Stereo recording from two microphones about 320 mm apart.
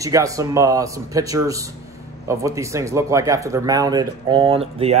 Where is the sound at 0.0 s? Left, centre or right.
Centre.